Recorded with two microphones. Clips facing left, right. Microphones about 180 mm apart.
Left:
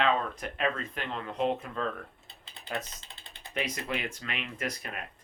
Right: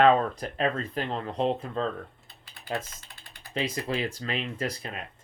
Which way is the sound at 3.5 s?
30° right (ahead or behind).